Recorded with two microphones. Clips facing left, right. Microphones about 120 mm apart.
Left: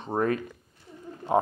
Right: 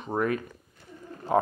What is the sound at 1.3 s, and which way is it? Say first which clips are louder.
Speech: even; 25° left (ahead or behind).